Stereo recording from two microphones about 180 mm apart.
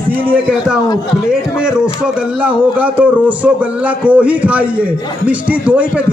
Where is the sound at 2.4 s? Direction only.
10° right (ahead or behind).